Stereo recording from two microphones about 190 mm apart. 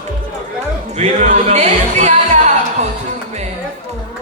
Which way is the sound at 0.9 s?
35° right (ahead or behind).